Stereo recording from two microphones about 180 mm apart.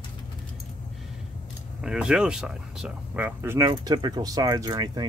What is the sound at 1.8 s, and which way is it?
Speech, 5° right (ahead or behind).